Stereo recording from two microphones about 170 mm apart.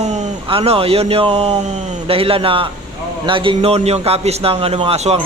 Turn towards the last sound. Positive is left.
turn(degrees=-35)  # may be behind; listen again after turning